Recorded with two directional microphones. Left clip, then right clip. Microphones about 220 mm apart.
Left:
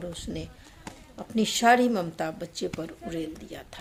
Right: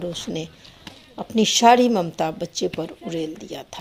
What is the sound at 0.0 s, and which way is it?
Speech, 25° right (ahead or behind).